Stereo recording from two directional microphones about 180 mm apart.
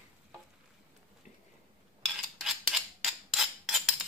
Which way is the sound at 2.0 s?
Centre (ahead or behind).